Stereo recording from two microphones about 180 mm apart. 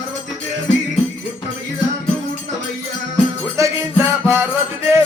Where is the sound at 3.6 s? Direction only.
15° right (ahead or behind).